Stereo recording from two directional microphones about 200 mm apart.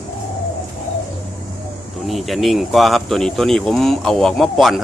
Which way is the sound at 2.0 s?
Centre (ahead or behind).